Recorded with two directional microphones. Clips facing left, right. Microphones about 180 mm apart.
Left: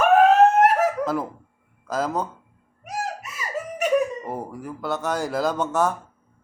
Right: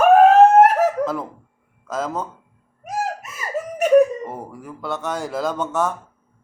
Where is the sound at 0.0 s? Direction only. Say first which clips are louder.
Right 4 dB; 40° right (ahead or behind).